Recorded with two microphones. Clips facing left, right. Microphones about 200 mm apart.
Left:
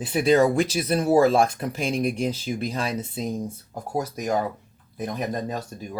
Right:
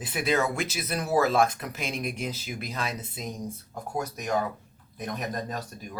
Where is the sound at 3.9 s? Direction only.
30° left (ahead or behind).